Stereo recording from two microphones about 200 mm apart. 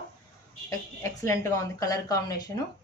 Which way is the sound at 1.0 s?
15° left (ahead or behind).